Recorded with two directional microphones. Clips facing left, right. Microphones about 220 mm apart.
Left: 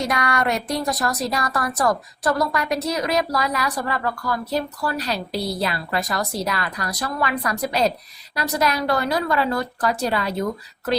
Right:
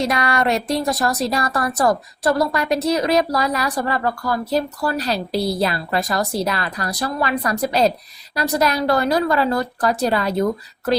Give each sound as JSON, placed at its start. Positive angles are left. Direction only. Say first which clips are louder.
{"t": 0.0, "sound": "a woman's voice", "louder": "right 3 dB", "side_deg": -25}